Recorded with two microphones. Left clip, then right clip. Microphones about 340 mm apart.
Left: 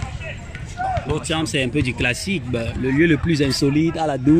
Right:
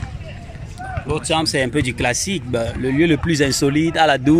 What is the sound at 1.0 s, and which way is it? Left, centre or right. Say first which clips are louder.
Speech: right 4 dB; centre.